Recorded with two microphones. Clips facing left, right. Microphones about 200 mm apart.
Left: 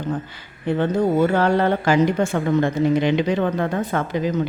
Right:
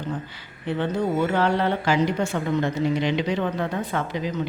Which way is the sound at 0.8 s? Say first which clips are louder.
Left 5 dB; 45° left (ahead or behind).